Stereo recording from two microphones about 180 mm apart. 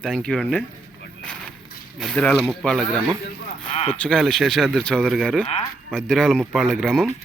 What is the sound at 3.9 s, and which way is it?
Speech, centre (ahead or behind).